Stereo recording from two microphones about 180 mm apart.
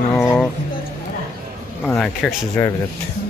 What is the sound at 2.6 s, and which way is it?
Speech, 15° left (ahead or behind).